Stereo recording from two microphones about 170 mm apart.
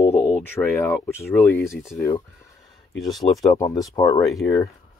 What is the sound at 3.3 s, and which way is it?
Speech, 20° left (ahead or behind).